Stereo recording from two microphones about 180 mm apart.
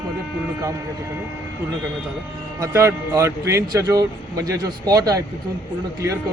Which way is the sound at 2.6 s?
15° right (ahead or behind).